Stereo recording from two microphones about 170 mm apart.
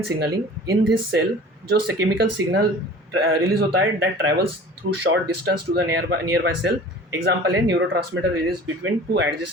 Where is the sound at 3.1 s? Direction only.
70° right (ahead or behind); by 7.9 s 90° right.